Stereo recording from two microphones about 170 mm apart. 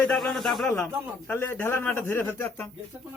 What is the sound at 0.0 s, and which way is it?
A man's voice, 5° left (ahead or behind).